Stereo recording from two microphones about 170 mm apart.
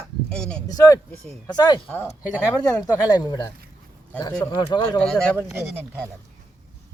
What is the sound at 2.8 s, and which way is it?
Speech, 20° left (ahead or behind).